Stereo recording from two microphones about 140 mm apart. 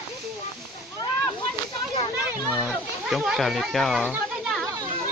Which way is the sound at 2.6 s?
Centre (ahead or behind).